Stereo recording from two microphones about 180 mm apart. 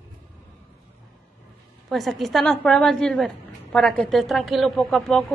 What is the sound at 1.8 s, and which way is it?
A woman's voice, centre (ahead or behind).